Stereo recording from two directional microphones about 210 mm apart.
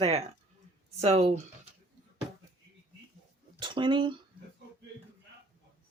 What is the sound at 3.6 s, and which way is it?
Speech, 25° right (ahead or behind).